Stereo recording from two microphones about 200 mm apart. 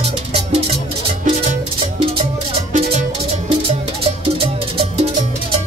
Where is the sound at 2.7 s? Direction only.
35° right (ahead or behind).